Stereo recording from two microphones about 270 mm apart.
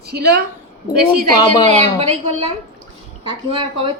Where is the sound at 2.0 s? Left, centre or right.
Right.